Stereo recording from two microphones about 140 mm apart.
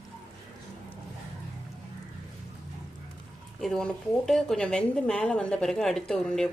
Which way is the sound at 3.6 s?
5° left (ahead or behind).